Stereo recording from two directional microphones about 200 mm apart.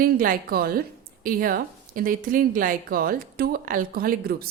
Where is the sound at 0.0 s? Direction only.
45° right (ahead or behind).